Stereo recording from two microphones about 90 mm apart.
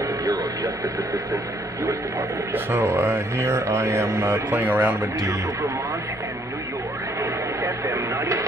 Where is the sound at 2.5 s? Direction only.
25° right (ahead or behind).